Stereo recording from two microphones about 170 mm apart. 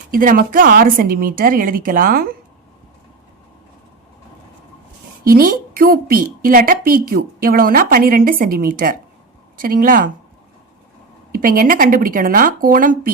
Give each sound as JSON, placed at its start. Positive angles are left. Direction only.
{"t": 0.1, "sound": "a woman's voice", "side_deg": -55}
{"t": 5.3, "sound": "a woman's voice", "side_deg": -55}
{"t": 11.3, "sound": "a woman's voice", "side_deg": -55}